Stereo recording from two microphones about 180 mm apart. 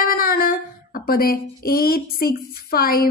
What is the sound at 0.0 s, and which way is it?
A man's voice, 50° left (ahead or behind).